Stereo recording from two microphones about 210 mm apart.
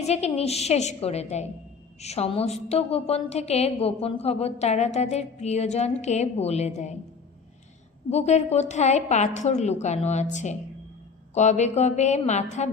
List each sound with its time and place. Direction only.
0.0 s a woman's voice: 30° left (ahead or behind)
8.1 s a woman's voice: 30° left (ahead or behind)